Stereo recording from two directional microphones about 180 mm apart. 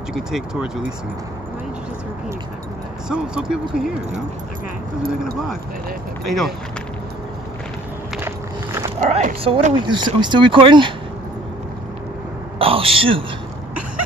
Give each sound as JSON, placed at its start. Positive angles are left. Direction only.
{"t": 0.1, "sound": "speech", "side_deg": -5}
{"t": 3.1, "sound": "speech", "side_deg": -5}
{"t": 6.2, "sound": "speech", "side_deg": 0}
{"t": 9.0, "sound": "speech", "side_deg": -45}
{"t": 9.8, "sound": "speech", "side_deg": -25}
{"t": 12.5, "sound": "speech", "side_deg": -30}